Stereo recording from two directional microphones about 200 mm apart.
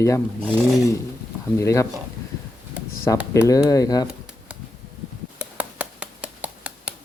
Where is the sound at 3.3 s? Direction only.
15° left (ahead or behind).